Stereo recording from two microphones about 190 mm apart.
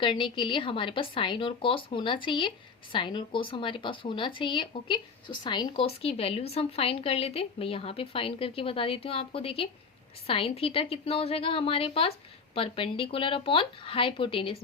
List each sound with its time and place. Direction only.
0.0 s speech: 25° left (ahead or behind)